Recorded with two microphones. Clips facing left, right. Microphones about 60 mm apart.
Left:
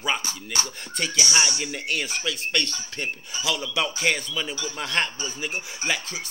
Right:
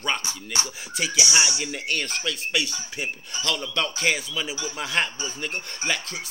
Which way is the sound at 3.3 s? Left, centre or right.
Centre.